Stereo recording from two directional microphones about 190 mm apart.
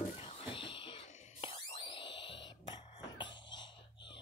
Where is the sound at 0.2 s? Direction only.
30° left (ahead or behind).